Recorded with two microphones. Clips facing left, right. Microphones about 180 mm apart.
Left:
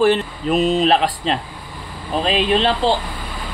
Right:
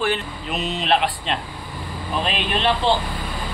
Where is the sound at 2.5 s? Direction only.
35° left (ahead or behind).